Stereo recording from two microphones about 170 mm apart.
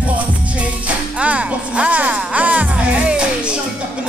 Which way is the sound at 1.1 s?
5° right (ahead or behind).